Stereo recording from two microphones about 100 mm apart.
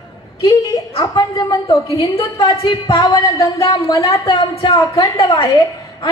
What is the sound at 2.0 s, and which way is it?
Speech, 70° left (ahead or behind).